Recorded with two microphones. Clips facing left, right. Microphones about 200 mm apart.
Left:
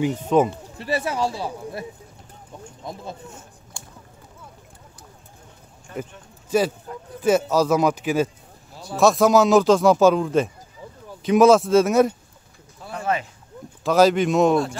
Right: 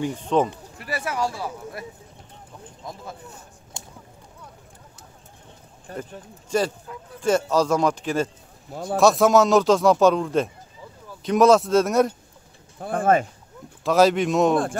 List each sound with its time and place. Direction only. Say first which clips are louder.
0.2 s speech: left 2 dB; 5° left (ahead or behind)
0.7 s speech: left 3 dB; 25° left (ahead or behind)
3.8 s a sound: right 2 dB; 20° right (ahead or behind)
5.9 s speech: left 2 dB; 35° right (ahead or behind)
6.5 s speech: left 3 dB; 5° left (ahead or behind)
12.7 s speech: right 6 dB; 50° right (ahead or behind)
13.8 s speech: left 1 dB; centre (ahead or behind)